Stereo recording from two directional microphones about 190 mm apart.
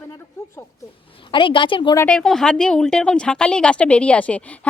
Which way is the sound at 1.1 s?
25° left (ahead or behind).